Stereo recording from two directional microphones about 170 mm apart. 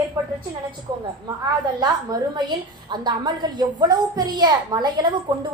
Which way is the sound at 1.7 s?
25° right (ahead or behind).